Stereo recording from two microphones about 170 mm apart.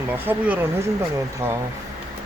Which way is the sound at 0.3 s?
10° right (ahead or behind).